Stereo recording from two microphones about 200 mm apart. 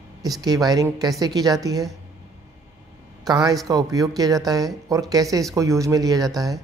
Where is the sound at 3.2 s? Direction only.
20° right (ahead or behind).